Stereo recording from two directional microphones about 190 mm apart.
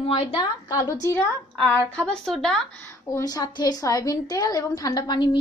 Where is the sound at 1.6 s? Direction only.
10° left (ahead or behind).